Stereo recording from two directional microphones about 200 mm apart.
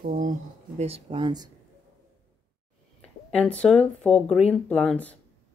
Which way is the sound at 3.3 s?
5° left (ahead or behind).